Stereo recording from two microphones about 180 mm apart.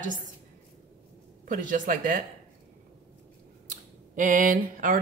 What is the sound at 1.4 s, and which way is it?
Speech, 45° right (ahead or behind).